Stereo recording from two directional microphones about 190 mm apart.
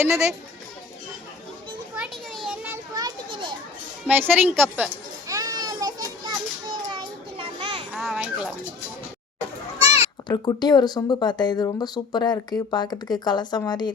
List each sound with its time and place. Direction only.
2.0 s children playing: centre (ahead or behind)
2.6 s children playing: 15° right (ahead or behind)
4.0 s a woman's voice: 10° right (ahead or behind)
5.3 s children playing: 20° right (ahead or behind)
7.9 s children playing: centre (ahead or behind)
9.9 s speech: 25° left (ahead or behind)